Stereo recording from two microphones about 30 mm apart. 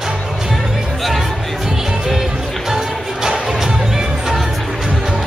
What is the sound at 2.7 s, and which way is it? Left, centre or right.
Music, centre.